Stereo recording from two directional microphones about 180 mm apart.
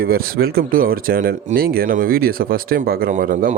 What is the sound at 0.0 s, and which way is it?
Speech, 55° right (ahead or behind).